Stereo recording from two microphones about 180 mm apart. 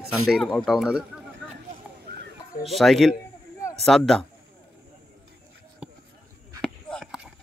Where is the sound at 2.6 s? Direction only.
Centre (ahead or behind).